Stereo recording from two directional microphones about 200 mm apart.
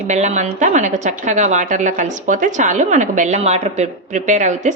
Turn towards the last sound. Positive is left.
turn(degrees=-35)  # may be behind; listen again after turning